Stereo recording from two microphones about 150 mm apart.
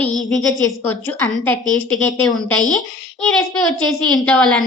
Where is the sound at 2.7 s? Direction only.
Centre (ahead or behind).